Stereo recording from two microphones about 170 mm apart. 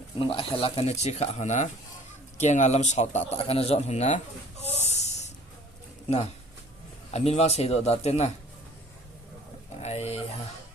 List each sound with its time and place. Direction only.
0.2 s speech: 30° left (ahead or behind)
4.6 s snort: 40° left (ahead or behind)
7.1 s speech: 40° left (ahead or behind)
9.8 s speech: 40° left (ahead or behind)